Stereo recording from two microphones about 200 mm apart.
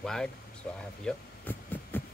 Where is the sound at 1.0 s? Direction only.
10° left (ahead or behind).